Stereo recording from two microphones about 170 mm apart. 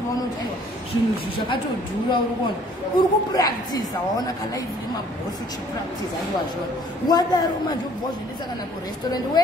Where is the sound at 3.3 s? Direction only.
20° left (ahead or behind).